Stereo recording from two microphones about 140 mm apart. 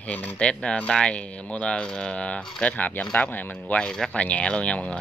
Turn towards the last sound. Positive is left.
turn(degrees=10)  # may be behind; listen again after turning